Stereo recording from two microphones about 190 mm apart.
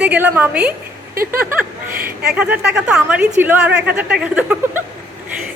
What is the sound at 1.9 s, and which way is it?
Speech, 50° right (ahead or behind).